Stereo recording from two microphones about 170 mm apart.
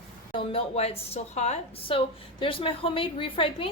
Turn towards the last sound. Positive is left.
turn(degrees=30)  # may be behind; listen again after turning